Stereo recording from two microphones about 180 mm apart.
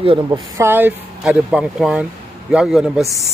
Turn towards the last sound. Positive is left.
turn(degrees=0)  # may be behind; listen again after turning